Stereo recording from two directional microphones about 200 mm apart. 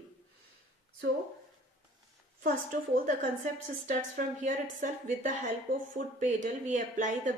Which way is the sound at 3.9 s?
40° right (ahead or behind).